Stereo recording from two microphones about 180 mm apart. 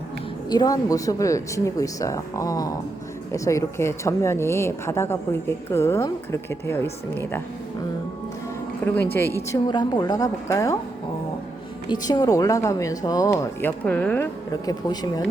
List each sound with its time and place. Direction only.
0.5 s speech: 20° left (ahead or behind)
8.8 s speech: 10° left (ahead or behind)
11.9 s speech: 25° left (ahead or behind)
14.7 s speech: 20° left (ahead or behind)